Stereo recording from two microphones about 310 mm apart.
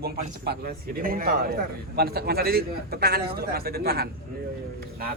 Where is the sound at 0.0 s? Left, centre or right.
Right.